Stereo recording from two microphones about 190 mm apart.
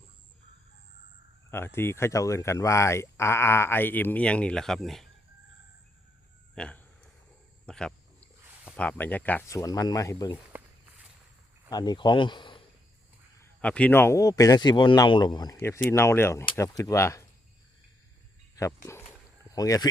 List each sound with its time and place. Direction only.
1.5 s speech: 10° left (ahead or behind)
6.6 s speech: 5° left (ahead or behind)
10.5 s walk: 10° right (ahead or behind)
11.7 s speech: 20° left (ahead or behind)
13.4 s speech: 5° left (ahead or behind)
18.5 s speech: 15° left (ahead or behind)